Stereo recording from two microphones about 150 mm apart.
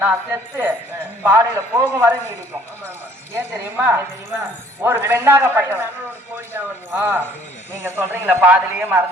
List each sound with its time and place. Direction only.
0.0 s a man's voice: 15° right (ahead or behind)
3.3 s a man's voice: 15° right (ahead or behind)